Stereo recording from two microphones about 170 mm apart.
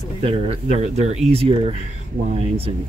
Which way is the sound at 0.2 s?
35° right (ahead or behind).